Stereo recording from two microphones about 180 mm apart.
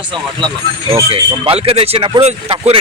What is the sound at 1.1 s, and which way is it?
Speech, 30° right (ahead or behind).